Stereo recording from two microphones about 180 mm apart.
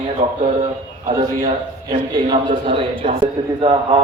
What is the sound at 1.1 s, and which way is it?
A man's voice, 20° right (ahead or behind).